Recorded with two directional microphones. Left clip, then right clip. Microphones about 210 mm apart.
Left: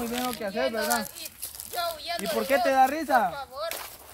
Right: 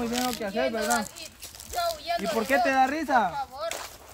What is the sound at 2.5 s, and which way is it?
Speech, 10° right (ahead or behind).